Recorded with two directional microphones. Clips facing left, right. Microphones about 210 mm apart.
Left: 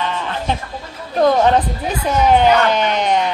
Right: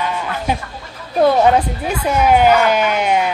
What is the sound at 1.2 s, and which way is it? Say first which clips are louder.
Speech: right 1 dB; 10° right (ahead or behind).